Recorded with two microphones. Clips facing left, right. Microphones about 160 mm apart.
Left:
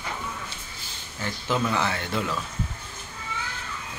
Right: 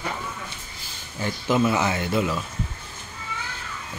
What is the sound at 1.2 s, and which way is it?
Speech, 15° right (ahead or behind).